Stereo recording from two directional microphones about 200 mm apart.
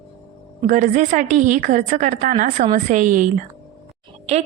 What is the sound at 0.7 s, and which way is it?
A woman's voice, 40° right (ahead or behind).